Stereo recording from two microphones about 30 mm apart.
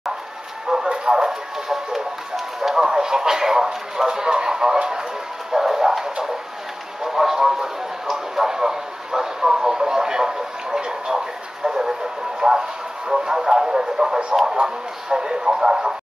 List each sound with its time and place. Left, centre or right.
0.7 s a sound: centre
1.1 s speech: centre
7.1 s speech: centre